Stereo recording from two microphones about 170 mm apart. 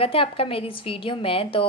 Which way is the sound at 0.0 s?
30° left (ahead or behind).